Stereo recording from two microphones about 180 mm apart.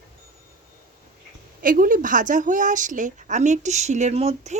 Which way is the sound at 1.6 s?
50° right (ahead or behind).